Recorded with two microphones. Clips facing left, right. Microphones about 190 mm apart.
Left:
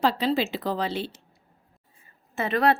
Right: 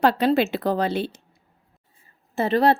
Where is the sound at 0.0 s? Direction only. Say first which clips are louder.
Right 5 dB; 65° right (ahead or behind).